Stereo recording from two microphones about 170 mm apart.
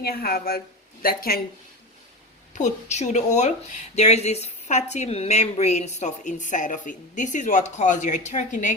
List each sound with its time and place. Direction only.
0.0 s speech: 60° left (ahead or behind)
2.6 s a woman's voice: 45° left (ahead or behind)